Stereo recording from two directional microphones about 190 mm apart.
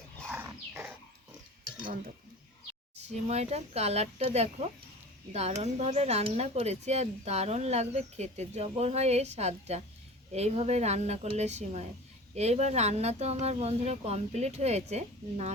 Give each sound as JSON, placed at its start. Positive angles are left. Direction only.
{"t": 0.3, "sound": "dog", "side_deg": -10}
{"t": 1.8, "sound": "speech", "side_deg": -45}